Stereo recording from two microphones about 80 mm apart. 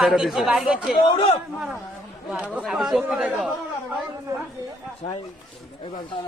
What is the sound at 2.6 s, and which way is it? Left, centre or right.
Speech, centre.